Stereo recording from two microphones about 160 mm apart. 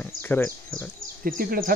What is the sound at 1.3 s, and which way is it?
Speech, 65° right (ahead or behind).